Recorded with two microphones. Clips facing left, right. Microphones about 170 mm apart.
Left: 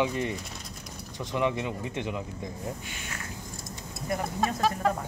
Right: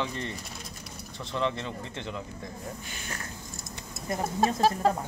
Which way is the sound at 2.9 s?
35° right (ahead or behind).